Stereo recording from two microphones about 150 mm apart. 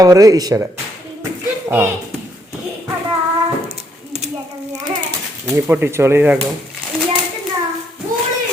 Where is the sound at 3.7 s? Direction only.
45° right (ahead or behind).